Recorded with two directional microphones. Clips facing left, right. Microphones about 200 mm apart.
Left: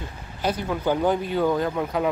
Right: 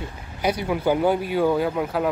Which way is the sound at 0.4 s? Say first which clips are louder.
Right 2 dB; 10° right (ahead or behind).